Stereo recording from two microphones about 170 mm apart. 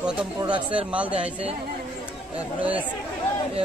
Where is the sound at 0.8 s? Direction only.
5° right (ahead or behind).